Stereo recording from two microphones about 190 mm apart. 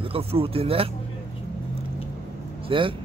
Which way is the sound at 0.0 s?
30° right (ahead or behind).